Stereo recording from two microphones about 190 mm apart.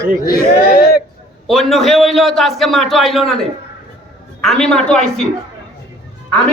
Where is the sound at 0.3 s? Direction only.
50° left (ahead or behind).